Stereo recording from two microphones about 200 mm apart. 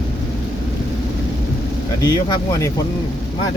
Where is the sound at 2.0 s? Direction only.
15° left (ahead or behind).